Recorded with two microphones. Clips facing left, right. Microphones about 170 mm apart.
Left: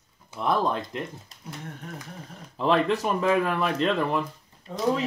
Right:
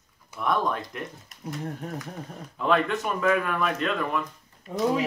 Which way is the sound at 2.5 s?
30° left (ahead or behind).